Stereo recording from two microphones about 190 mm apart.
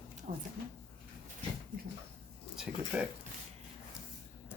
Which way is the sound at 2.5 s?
5° right (ahead or behind).